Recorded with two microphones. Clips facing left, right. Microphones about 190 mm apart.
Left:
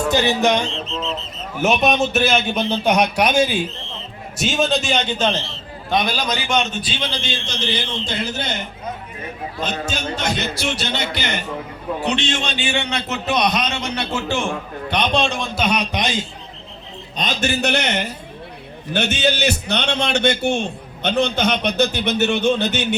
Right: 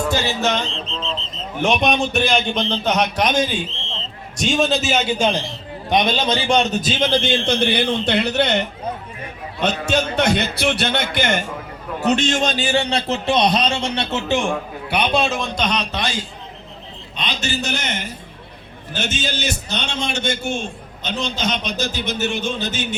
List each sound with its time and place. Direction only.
0.1 s a man's voice: 20° left (ahead or behind)
3.8 s a sound: 25° right (ahead or behind)
4.4 s a man's voice: centre (ahead or behind); by 8.6 s 65° right (ahead or behind)
9.8 s speech: 60° right (ahead or behind)
12.0 s a man's voice: 45° right (ahead or behind); by 14.4 s 20° right (ahead or behind)
14.8 s a man's voice: 10° right (ahead or behind); by 16.2 s 20° left (ahead or behind)
17.2 s a man's voice: 50° left (ahead or behind)